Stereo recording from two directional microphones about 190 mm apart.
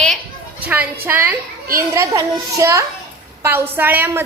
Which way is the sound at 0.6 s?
10° right (ahead or behind).